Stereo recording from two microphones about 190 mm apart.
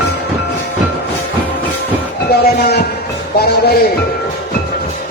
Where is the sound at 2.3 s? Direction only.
60° left (ahead or behind).